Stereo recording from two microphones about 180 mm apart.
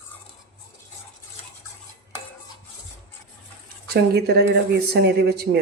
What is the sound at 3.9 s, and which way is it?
Speech, 65° right (ahead or behind).